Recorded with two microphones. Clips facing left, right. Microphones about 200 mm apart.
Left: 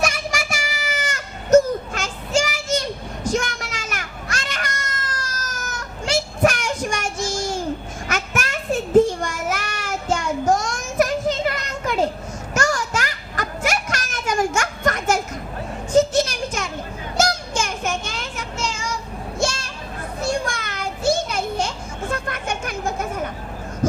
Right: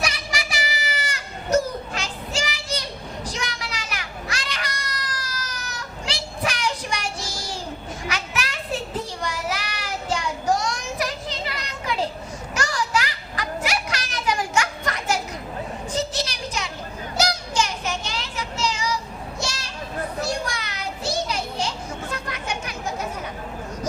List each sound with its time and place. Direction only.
0.0 s child singing: 50° left (ahead or behind)
12.5 s children playing: 45° left (ahead or behind)
15.9 s a sound: 50° left (ahead or behind)
17.2 s child singing: 50° left (ahead or behind)
19.4 s children playing: 50° left (ahead or behind)